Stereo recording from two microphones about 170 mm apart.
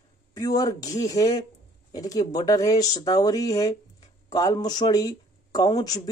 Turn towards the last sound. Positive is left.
turn(degrees=25)  # may be behind; listen again after turning